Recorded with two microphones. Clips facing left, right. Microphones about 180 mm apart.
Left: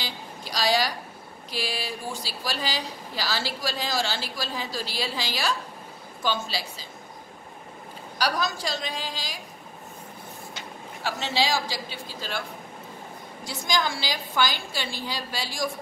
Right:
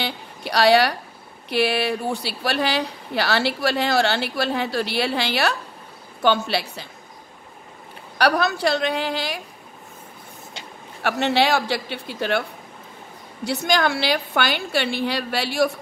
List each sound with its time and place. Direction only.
0.0 s a sound: 65° right (ahead or behind)
1.5 s speech: 65° right (ahead or behind)
8.2 s speech: 65° right (ahead or behind)
11.0 s speech: 60° right (ahead or behind)